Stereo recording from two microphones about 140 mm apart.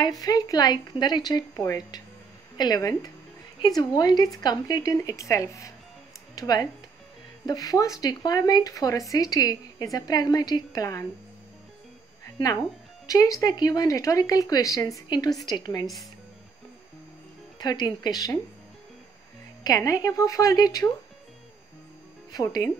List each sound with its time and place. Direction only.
0.2 s speech: 25° left (ahead or behind)
13.0 s speech: 25° left (ahead or behind)
17.6 s speech: 30° left (ahead or behind)
19.6 s speech: 25° left (ahead or behind)
22.3 s speech: 25° left (ahead or behind)